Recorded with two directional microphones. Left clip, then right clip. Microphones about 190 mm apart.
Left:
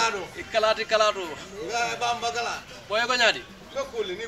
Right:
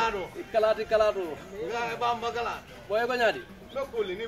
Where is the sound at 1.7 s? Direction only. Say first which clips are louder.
Left 3 dB; 45° left (ahead or behind).